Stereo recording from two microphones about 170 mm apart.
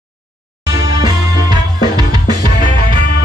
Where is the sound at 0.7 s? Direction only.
20° right (ahead or behind).